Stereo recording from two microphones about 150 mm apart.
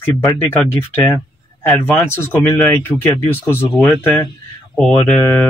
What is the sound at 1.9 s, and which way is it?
Speech, 15° left (ahead or behind).